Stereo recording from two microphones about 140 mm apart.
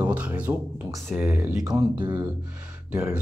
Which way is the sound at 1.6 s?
30° right (ahead or behind).